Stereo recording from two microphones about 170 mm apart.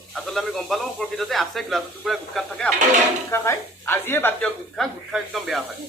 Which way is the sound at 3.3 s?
15° left (ahead or behind).